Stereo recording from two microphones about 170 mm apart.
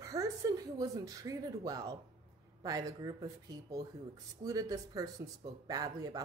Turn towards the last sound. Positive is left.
turn(degrees=-20)  # may be behind; listen again after turning